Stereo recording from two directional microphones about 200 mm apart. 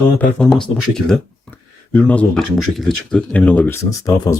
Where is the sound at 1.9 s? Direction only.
5° left (ahead or behind).